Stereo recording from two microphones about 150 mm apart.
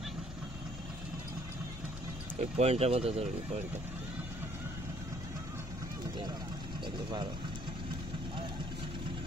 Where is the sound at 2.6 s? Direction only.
45° right (ahead or behind).